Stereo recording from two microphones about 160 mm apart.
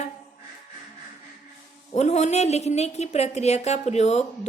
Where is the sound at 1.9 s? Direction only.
45° left (ahead or behind).